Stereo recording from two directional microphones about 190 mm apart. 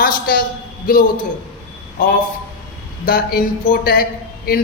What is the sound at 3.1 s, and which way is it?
Speech, 50° left (ahead or behind).